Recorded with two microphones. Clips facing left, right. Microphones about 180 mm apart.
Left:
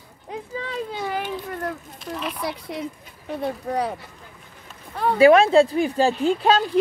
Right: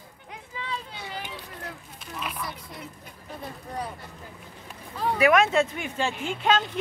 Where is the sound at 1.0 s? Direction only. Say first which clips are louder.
Left 10 dB; 60° left (ahead or behind).